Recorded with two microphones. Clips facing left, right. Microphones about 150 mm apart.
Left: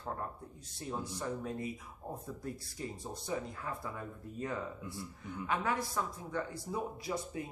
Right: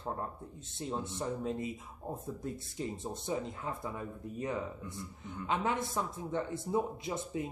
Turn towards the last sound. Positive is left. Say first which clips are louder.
# right 2 dB
turn(degrees=-20)  # may be behind; listen again after turning